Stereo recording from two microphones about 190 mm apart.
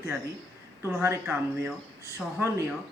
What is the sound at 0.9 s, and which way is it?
Speech, 10° right (ahead or behind).